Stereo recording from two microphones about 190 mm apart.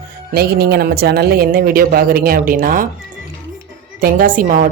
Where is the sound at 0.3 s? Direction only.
55° right (ahead or behind).